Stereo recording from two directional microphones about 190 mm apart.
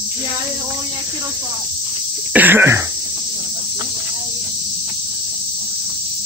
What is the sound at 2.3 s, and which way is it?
Cough, 10° right (ahead or behind).